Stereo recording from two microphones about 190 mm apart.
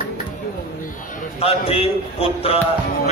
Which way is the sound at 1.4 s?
30° left (ahead or behind).